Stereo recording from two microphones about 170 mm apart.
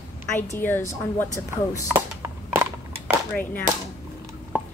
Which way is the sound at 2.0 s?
15° right (ahead or behind).